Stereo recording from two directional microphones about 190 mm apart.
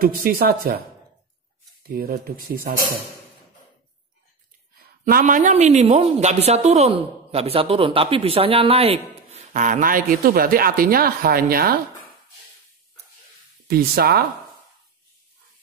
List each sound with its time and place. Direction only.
0.0 s speech: 50° right (ahead or behind)
5.0 s a woman's voice: 45° right (ahead or behind)
13.7 s speech: 50° right (ahead or behind)